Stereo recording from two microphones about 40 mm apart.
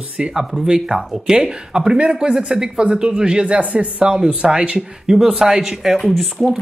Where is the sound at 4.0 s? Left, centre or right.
Right.